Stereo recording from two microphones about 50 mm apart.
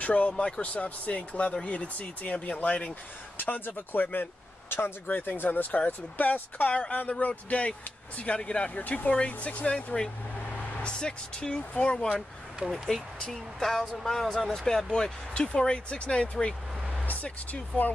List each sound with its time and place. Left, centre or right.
0.0 s speech: left
3.3 s speech: left
6.7 s speech: left
12.6 s speech: centre; by 16.5 s left
17.0 s speech: left